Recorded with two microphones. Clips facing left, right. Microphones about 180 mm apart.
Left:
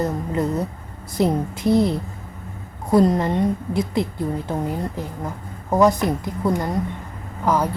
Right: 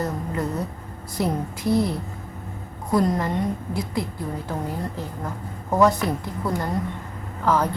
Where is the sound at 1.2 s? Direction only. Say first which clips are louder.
Left 5 dB; 20° left (ahead or behind).